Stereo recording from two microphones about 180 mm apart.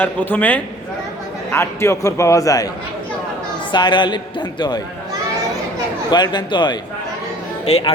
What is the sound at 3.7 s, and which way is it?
A man's voice, 25° left (ahead or behind).